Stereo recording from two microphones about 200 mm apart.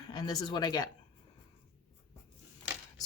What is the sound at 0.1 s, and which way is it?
Speech, 20° left (ahead or behind).